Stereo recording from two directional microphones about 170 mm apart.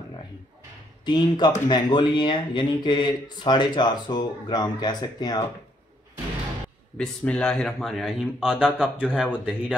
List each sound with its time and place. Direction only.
1.0 s speech: 25° left (ahead or behind)
7.0 s speech: 5° left (ahead or behind)